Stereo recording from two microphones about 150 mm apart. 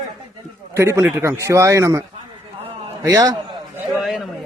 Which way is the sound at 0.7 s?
20° right (ahead or behind).